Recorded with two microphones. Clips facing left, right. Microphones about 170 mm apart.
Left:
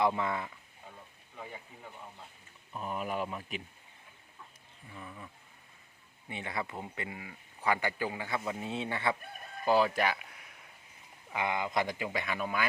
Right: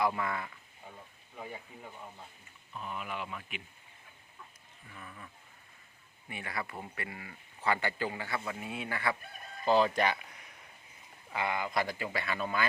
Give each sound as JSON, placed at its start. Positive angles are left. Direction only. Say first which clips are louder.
{"t": 0.0, "sound": "speech", "louder": "left 2 dB", "side_deg": 20}
{"t": 2.7, "sound": "speech", "louder": "left 5 dB", "side_deg": 40}
{"t": 4.9, "sound": "speech", "louder": "left 3 dB", "side_deg": 15}
{"t": 8.4, "sound": "speech", "louder": "left 3 dB", "side_deg": 25}
{"t": 9.6, "sound": "speech", "louder": "even", "side_deg": 5}
{"t": 11.3, "sound": "speech", "louder": "left 1 dB", "side_deg": 20}